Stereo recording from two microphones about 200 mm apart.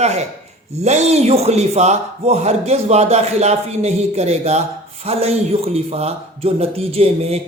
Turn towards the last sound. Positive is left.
turn(degrees=-30)  # may be behind; listen again after turning